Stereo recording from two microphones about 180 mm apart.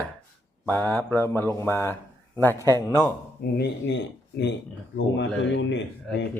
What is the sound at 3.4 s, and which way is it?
Speech, 75° left (ahead or behind).